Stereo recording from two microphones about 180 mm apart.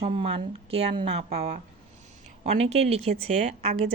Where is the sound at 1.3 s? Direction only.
55° right (ahead or behind).